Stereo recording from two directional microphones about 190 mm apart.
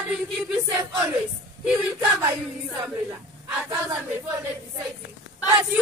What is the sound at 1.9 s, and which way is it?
Speech, 15° right (ahead or behind).